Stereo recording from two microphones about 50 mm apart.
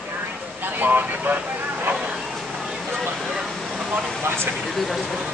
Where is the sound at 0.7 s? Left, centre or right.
Right.